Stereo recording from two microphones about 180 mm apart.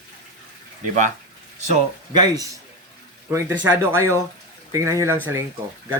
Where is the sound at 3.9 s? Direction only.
15° right (ahead or behind).